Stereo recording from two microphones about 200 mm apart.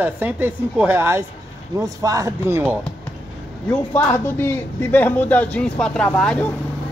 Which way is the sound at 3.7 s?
10° left (ahead or behind).